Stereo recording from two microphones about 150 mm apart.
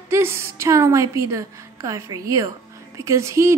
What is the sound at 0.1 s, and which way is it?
A woman's voice, 15° right (ahead or behind).